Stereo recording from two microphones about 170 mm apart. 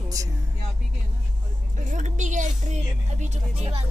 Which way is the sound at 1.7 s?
45° right (ahead or behind).